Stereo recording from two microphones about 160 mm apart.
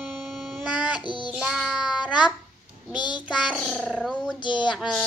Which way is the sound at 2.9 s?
30° left (ahead or behind).